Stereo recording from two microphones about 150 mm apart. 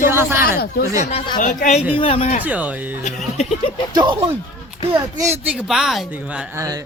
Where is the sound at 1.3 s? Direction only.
60° left (ahead or behind).